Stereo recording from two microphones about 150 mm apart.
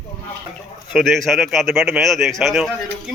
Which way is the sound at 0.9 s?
Centre (ahead or behind).